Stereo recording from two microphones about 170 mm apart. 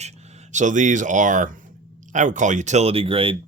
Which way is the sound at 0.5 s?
45° right (ahead or behind).